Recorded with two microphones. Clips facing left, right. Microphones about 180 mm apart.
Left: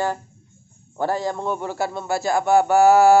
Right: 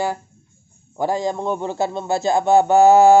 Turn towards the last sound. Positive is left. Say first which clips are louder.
# right 2 dB
turn(degrees=-20)  # may be behind; listen again after turning